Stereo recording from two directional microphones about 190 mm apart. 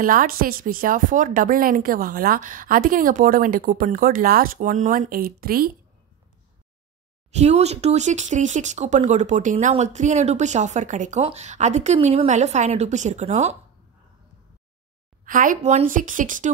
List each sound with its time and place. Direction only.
0.0 s speech: 45° right (ahead or behind)
7.2 s speech: 35° right (ahead or behind)
15.2 s speech: 45° right (ahead or behind)